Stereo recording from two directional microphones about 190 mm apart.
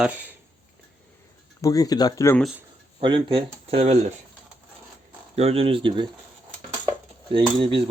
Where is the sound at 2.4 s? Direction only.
5° right (ahead or behind).